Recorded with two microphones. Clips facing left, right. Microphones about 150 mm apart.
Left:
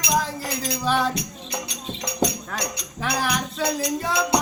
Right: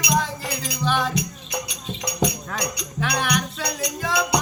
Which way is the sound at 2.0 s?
30° left (ahead or behind).